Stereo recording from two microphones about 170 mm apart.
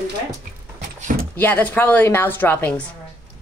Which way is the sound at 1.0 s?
50° right (ahead or behind).